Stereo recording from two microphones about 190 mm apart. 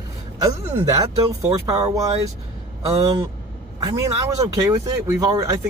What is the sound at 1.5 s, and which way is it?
Speech, 30° right (ahead or behind).